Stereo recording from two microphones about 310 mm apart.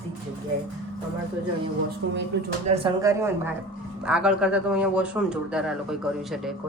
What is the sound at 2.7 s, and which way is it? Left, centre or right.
A woman's voice, centre.